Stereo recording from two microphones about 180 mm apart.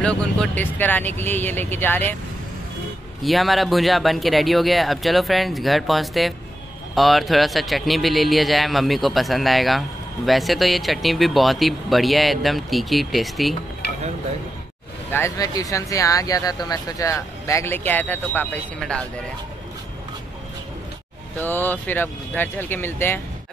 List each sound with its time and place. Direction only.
0.0 s speech: 5° left (ahead or behind)
3.2 s speech: centre (ahead or behind)
15.1 s speech: 15° left (ahead or behind)
21.4 s speech: 10° left (ahead or behind)